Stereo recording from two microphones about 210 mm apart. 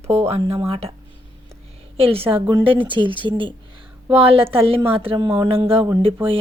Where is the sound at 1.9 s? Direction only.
25° right (ahead or behind).